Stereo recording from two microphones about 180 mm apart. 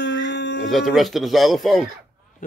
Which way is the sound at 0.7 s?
Centre (ahead or behind).